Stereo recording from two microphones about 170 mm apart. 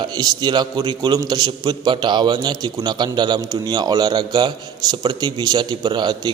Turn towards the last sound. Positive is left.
turn(degrees=-25)  # may be behind; listen again after turning